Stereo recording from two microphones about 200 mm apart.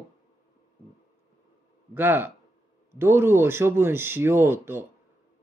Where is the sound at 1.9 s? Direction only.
10° right (ahead or behind).